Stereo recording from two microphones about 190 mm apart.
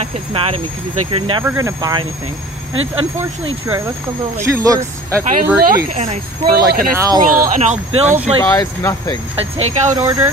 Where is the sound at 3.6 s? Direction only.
15° right (ahead or behind).